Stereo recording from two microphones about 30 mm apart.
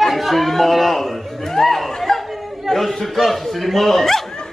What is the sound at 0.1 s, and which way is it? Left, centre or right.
Chatter, centre.